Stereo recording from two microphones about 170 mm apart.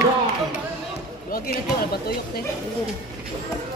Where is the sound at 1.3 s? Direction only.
60° left (ahead or behind).